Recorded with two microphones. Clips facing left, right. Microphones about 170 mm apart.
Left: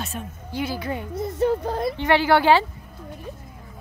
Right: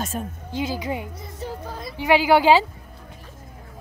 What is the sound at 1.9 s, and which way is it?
Speech, 10° right (ahead or behind).